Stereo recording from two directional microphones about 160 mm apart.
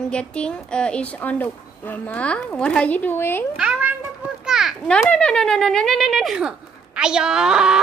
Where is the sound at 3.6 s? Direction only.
10° right (ahead or behind).